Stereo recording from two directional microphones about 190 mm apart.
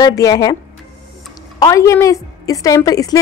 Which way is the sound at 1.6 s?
15° left (ahead or behind).